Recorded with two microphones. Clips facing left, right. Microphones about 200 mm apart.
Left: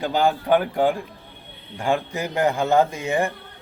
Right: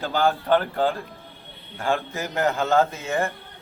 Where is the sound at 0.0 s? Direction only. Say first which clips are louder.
Left 2 dB; 15° left (ahead or behind).